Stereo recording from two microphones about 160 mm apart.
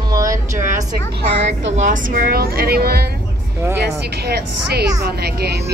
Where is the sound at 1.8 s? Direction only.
55° right (ahead or behind).